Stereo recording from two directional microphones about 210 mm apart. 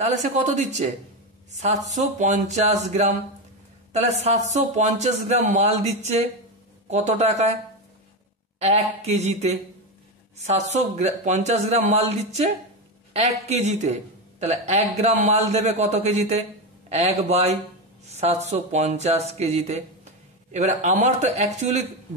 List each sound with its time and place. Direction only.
0.0 s speech: 35° right (ahead or behind)
2.0 s speech: 35° right (ahead or behind)
8.5 s speech: 30° right (ahead or behind)
13.5 s speech: 35° right (ahead or behind)